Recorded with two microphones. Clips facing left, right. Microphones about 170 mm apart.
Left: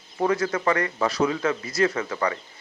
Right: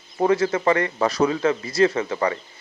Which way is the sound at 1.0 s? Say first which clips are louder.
Right 3 dB; 40° right (ahead or behind).